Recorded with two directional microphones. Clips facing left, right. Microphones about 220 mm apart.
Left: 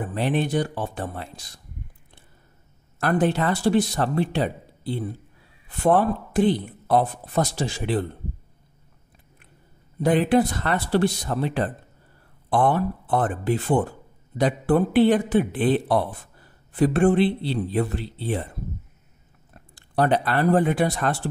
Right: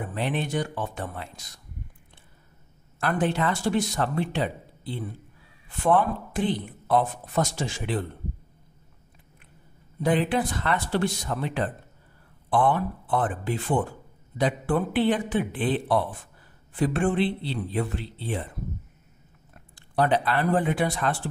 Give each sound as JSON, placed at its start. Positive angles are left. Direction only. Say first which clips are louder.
{"t": 0.1, "sound": "speech", "louder": "left 5 dB", "side_deg": 35}
{"t": 3.0, "sound": "speech", "louder": "left 4 dB", "side_deg": 40}
{"t": 10.0, "sound": "speech", "louder": "left 5 dB", "side_deg": 40}
{"t": 19.7, "sound": "a man's voice", "louder": "left 2 dB", "side_deg": 45}